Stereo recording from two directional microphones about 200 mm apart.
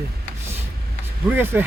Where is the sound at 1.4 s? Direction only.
10° right (ahead or behind).